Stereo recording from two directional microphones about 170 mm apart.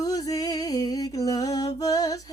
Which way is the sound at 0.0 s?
20° left (ahead or behind).